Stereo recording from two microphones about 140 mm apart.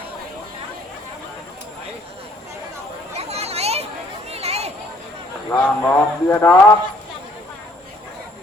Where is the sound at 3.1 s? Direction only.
50° right (ahead or behind).